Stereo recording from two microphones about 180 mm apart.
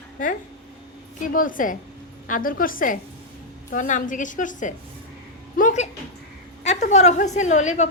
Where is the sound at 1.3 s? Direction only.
50° left (ahead or behind).